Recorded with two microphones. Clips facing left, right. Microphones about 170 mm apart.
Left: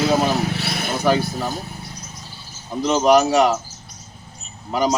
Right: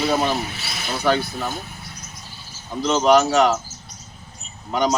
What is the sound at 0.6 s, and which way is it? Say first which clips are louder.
Vehicle: left 5 dB; 55° left (ahead or behind).